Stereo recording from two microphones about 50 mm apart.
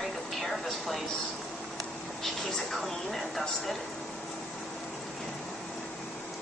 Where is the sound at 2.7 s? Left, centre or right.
Centre.